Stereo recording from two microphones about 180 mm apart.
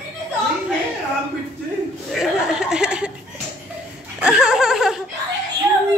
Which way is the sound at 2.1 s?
5° right (ahead or behind).